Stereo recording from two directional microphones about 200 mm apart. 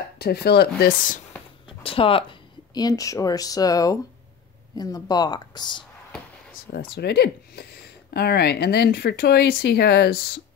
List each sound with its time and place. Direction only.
0.2 s speech: 55° left (ahead or behind)
1.7 s speech: 25° left (ahead or behind)
6.7 s speech: 55° left (ahead or behind)